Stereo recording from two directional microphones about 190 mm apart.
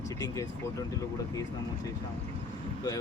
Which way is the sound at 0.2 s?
15° left (ahead or behind).